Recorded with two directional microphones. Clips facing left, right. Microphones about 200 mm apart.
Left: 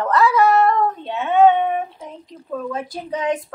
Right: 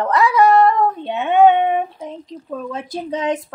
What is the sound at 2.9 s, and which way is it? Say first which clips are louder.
Speech: right 3 dB; 25° right (ahead or behind).